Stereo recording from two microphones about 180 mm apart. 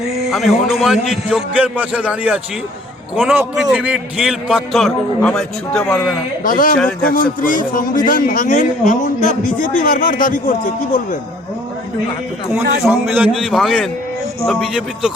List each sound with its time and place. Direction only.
0.0 s a man's voice: centre (ahead or behind)
6.4 s a man's voice: 50° left (ahead or behind)
6.7 s a man's voice: 5° left (ahead or behind)
7.1 s a man's voice: 50° left (ahead or behind)
12.9 s a man's voice: 10° right (ahead or behind)